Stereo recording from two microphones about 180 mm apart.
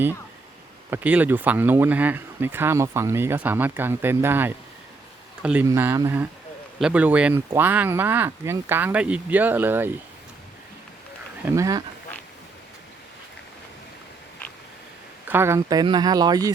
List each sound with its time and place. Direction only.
0.9 s speech: 10° right (ahead or behind)
11.4 s speech: 15° right (ahead or behind)
15.3 s speech: 15° right (ahead or behind)